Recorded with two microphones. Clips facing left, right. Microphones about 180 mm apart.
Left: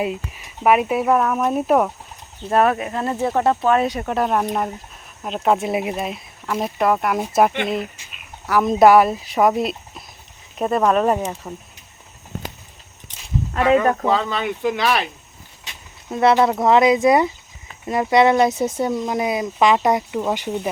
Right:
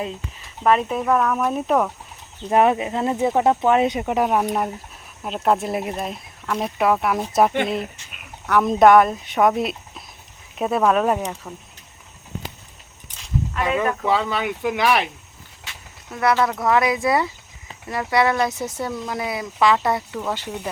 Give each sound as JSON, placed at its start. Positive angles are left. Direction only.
{"t": 0.0, "sound": "speech", "side_deg": 15}
{"t": 2.5, "sound": "speech", "side_deg": -15}
{"t": 13.8, "sound": "speech", "side_deg": 40}
{"t": 14.1, "sound": "speech", "side_deg": -10}
{"t": 15.6, "sound": "speech", "side_deg": 25}